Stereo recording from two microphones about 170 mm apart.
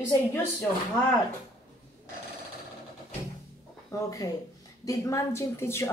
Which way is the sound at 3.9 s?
20° left (ahead or behind).